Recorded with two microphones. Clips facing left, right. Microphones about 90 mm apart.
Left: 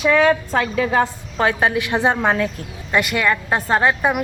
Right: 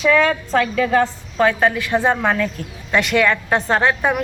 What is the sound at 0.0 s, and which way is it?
A woman's voice, 15° left (ahead or behind).